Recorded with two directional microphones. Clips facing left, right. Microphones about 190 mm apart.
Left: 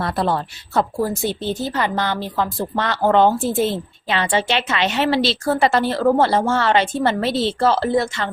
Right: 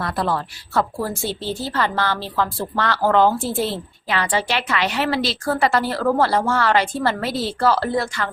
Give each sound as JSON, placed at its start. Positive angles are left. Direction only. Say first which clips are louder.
{"t": 0.0, "sound": "a woman's voice", "louder": "left 2 dB", "side_deg": 25}